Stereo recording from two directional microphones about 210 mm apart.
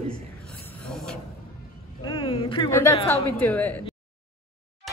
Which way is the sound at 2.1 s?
25° left (ahead or behind).